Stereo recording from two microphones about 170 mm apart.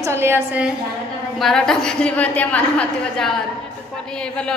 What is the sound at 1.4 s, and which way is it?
A man's voice, centre (ahead or behind).